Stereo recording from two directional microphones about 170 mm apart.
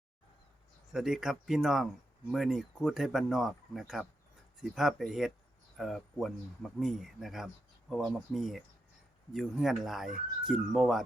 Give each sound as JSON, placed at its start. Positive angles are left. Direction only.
{"t": 0.9, "sound": "speech", "side_deg": -5}